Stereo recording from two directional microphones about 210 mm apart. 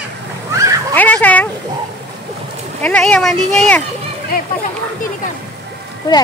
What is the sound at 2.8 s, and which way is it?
Speech, 5° left (ahead or behind).